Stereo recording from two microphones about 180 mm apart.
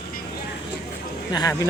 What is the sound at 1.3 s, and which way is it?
Speech, 20° left (ahead or behind).